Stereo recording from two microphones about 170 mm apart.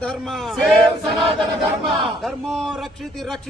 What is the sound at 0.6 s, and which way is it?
Speech, centre (ahead or behind).